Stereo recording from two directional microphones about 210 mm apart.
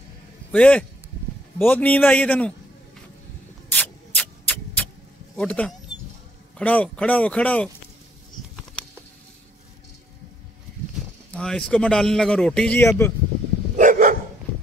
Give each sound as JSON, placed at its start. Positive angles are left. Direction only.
{"t": 0.5, "sound": "a man's voice", "side_deg": 5}
{"t": 3.7, "sound": "a sound", "side_deg": 5}
{"t": 5.3, "sound": "speech", "side_deg": 5}
{"t": 11.3, "sound": "a man's voice", "side_deg": 5}
{"t": 13.7, "sound": "dog", "side_deg": -40}